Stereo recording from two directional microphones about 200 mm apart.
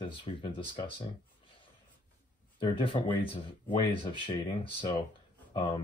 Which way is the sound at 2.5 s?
25° left (ahead or behind).